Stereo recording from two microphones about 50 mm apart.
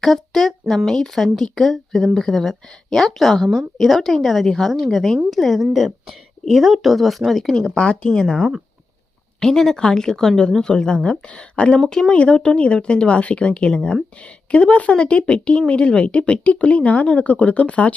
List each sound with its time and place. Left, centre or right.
0.0 s a woman's voice: centre
12.1 s speech: left